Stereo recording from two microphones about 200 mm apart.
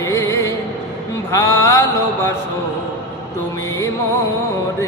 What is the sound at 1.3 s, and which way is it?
Mantra, 15° left (ahead or behind).